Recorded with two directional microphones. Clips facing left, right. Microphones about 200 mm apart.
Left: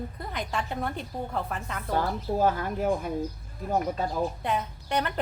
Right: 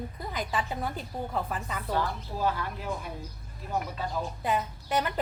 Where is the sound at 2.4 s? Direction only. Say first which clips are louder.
Left 4 dB; 45° left (ahead or behind).